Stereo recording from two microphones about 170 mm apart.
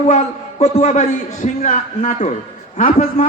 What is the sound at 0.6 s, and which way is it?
A man's voice, 45° left (ahead or behind).